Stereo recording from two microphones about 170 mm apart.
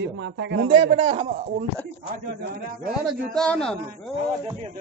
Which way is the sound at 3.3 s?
5° left (ahead or behind).